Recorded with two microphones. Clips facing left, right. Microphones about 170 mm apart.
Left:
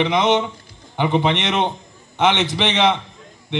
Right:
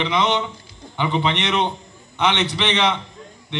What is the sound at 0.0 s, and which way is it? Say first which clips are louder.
A man's voice: left 4 dB; 50° left (ahead or behind).